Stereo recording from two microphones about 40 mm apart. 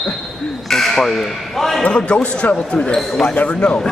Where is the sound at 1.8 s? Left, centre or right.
Left.